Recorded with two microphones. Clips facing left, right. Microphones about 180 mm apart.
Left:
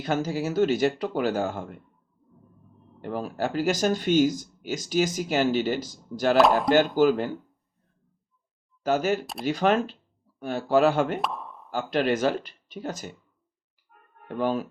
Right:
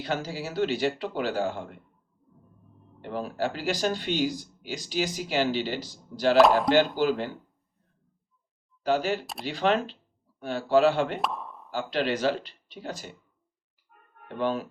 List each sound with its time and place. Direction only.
0.0 s speech: 45° left (ahead or behind)
3.0 s speech: 45° left (ahead or behind)
6.3 s speech: centre (ahead or behind)
6.7 s speech: 50° left (ahead or behind)
8.8 s speech: 45° left (ahead or behind)
9.2 s speech: centre (ahead or behind)
9.5 s speech: 45° left (ahead or behind)
11.2 s plop: centre (ahead or behind)
11.7 s speech: 45° left (ahead or behind)
14.3 s speech: 45° left (ahead or behind)